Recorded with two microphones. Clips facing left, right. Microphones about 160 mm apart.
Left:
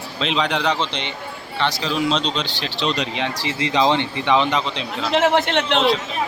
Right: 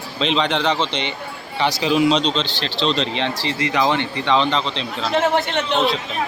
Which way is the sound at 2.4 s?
10° left (ahead or behind).